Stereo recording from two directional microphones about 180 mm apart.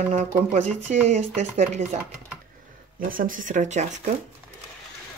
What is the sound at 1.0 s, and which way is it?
Speech, 40° right (ahead or behind).